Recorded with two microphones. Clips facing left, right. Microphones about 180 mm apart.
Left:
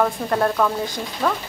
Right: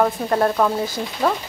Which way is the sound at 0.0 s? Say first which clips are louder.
Right 2 dB; 5° right (ahead or behind).